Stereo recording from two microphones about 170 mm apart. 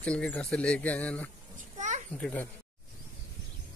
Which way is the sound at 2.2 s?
10° left (ahead or behind).